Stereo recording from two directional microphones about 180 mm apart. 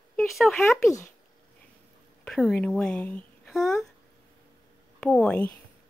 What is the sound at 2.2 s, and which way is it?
Speech, 5° left (ahead or behind).